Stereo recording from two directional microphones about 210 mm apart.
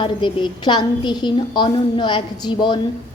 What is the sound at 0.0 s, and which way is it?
A woman's voice, 25° left (ahead or behind).